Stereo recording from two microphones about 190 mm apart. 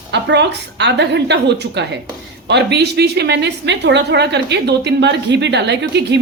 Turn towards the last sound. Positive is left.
turn(degrees=-65)  # may be behind; listen again after turning